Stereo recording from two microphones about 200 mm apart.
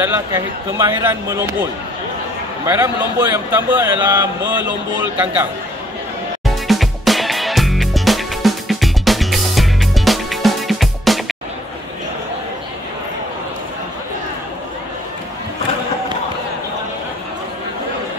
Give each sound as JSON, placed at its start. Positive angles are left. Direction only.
{"t": 0.0, "sound": "speech", "side_deg": -10}
{"t": 6.4, "sound": "music", "side_deg": 0}